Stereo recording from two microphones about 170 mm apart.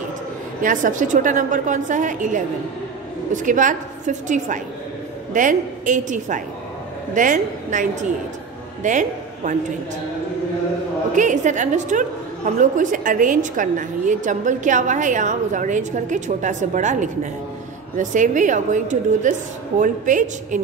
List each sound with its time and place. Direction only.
0.6 s a woman's voice: 50° right (ahead or behind)
11.1 s a woman's voice: 45° right (ahead or behind)